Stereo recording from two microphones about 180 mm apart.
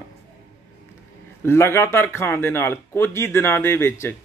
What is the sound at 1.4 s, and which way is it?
A man's voice, 15° left (ahead or behind).